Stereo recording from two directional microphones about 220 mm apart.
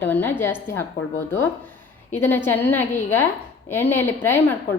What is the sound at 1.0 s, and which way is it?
Speech, 50° left (ahead or behind).